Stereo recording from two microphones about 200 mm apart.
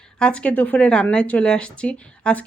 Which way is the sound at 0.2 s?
5° left (ahead or behind).